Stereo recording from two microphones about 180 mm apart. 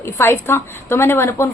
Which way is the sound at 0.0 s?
15° left (ahead or behind).